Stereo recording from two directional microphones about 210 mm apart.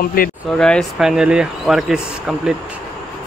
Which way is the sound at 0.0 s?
45° left (ahead or behind).